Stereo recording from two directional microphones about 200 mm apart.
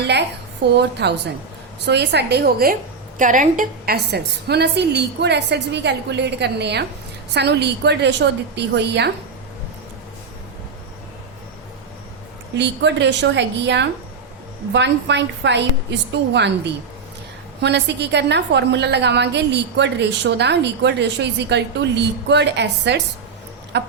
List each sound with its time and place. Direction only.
0.8 s a woman's voice: 55° right (ahead or behind)
12.5 s a woman's voice: 60° right (ahead or behind)